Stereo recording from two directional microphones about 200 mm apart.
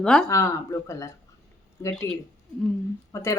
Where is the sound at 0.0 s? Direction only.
5° left (ahead or behind).